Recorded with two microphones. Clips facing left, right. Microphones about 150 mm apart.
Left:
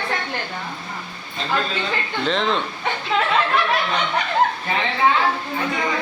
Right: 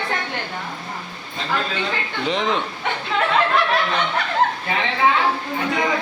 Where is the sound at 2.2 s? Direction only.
15° right (ahead or behind).